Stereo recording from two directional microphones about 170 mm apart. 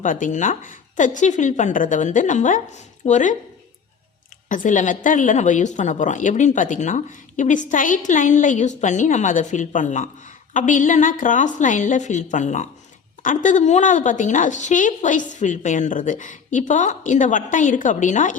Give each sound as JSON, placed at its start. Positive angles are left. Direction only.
{"t": 0.0, "sound": "a woman's voice", "side_deg": 50}
{"t": 4.4, "sound": "a woman's voice", "side_deg": 50}